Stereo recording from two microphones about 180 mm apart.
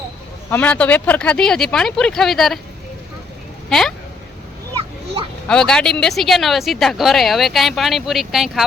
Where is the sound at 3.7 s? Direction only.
Centre (ahead or behind).